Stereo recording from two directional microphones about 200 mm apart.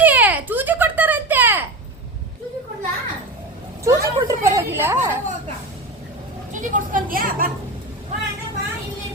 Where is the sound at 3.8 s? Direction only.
15° right (ahead or behind).